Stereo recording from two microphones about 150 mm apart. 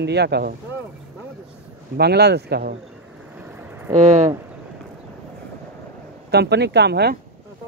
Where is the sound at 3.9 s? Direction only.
50° right (ahead or behind).